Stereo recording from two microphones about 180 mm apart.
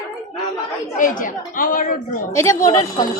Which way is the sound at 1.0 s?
50° left (ahead or behind).